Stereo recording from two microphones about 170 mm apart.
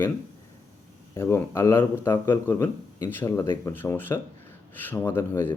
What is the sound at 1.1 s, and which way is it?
A man's voice, 15° left (ahead or behind).